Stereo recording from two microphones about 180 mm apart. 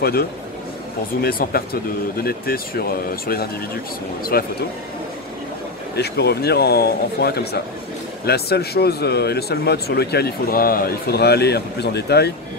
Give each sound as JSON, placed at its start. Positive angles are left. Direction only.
{"t": 1.2, "sound": "speech", "side_deg": 60}
{"t": 5.9, "sound": "speech", "side_deg": 65}